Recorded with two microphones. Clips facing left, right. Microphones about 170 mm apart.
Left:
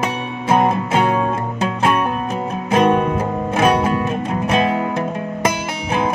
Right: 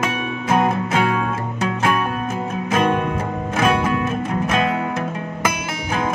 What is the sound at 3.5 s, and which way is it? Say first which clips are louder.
Music: left 2 dB; 35° left (ahead or behind).